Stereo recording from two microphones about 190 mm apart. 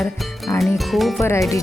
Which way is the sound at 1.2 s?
15° left (ahead or behind).